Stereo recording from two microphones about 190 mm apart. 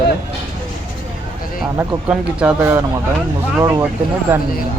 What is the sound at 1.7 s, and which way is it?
Speech, 10° right (ahead or behind).